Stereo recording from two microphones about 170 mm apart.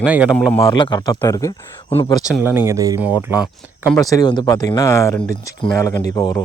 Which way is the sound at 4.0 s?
20° left (ahead or behind).